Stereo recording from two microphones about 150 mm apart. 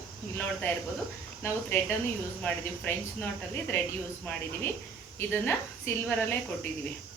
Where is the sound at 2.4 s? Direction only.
10° left (ahead or behind).